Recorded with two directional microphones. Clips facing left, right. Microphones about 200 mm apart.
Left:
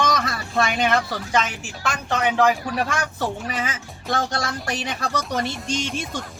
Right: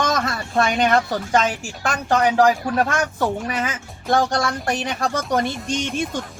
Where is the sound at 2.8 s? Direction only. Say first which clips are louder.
Right 4 dB; 50° right (ahead or behind).